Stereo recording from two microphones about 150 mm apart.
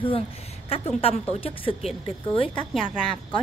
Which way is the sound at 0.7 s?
40° left (ahead or behind).